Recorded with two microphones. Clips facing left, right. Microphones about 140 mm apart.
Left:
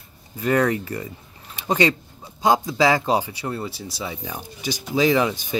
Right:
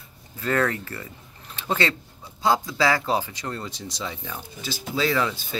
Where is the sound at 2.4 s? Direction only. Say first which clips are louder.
Left 3 dB; 20° left (ahead or behind).